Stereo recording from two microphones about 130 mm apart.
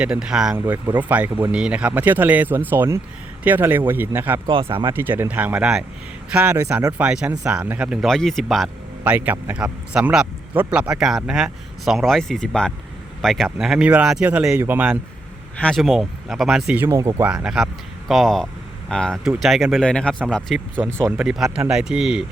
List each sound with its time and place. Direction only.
0.0 s speech: 5° right (ahead or behind)
4.4 s speech: 40° right (ahead or behind)
4.9 s speech: 15° right (ahead or behind)
7.0 s speech: 10° right (ahead or behind)
8.0 s speech: 5° left (ahead or behind)
9.0 s speech: 10° right (ahead or behind)
15.5 s speech: 5° left (ahead or behind)
16.8 s speech: 20° right (ahead or behind)
17.2 s speech: 5° right (ahead or behind)
19.2 s speech: 5° right (ahead or behind)